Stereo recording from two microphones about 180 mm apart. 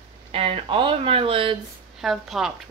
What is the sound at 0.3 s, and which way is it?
Speech, 30° right (ahead or behind).